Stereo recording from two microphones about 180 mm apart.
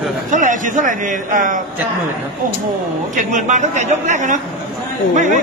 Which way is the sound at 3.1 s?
45° right (ahead or behind).